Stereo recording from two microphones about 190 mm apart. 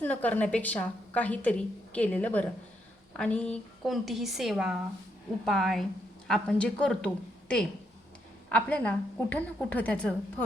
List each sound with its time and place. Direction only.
0.0 s a woman's voice: 5° left (ahead or behind)